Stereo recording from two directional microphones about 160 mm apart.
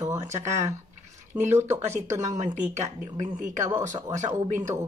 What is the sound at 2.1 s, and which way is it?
Speech, 50° right (ahead or behind).